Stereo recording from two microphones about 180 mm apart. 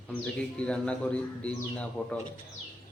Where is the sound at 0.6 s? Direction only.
5° left (ahead or behind).